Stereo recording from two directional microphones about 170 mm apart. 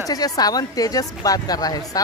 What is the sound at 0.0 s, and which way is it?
A woman's voice, 20° left (ahead or behind).